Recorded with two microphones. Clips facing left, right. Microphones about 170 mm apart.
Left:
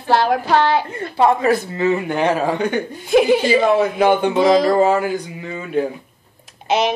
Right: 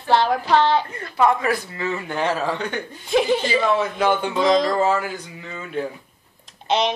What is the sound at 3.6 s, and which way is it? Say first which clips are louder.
Speech: left 5 dB; 40° left (ahead or behind).